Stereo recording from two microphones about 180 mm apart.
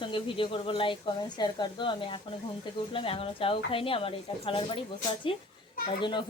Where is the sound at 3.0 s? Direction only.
30° left (ahead or behind).